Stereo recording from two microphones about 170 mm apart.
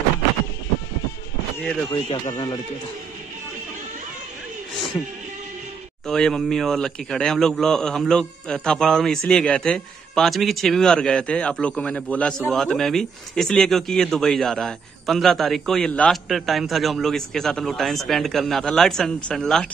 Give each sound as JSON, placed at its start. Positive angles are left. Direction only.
{"t": 1.6, "sound": "speech", "side_deg": 5}
{"t": 2.2, "sound": "a man's voice", "side_deg": 25}
{"t": 6.0, "sound": "a man's voice", "side_deg": 5}